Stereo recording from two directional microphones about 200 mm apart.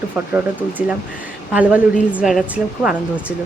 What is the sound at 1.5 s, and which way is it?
Speech, 5° right (ahead or behind).